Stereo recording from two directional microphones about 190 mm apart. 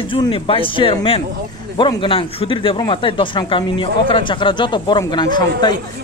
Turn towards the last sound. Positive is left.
turn(degrees=25)  # may be behind; listen again after turning